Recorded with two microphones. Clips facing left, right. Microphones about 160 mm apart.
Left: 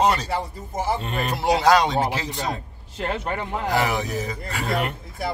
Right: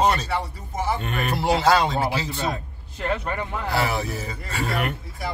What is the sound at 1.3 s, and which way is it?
Speech, 15° left (ahead or behind).